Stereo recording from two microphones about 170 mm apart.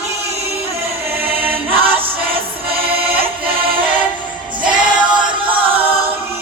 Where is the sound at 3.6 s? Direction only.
30° right (ahead or behind).